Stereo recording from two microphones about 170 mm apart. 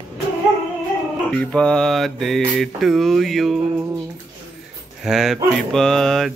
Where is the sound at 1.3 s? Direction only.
5° left (ahead or behind).